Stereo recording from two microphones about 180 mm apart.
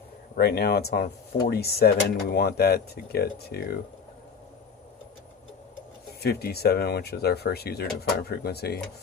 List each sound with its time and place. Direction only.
0.3 s speech: 60° left (ahead or behind)
6.2 s speech: 60° left (ahead or behind)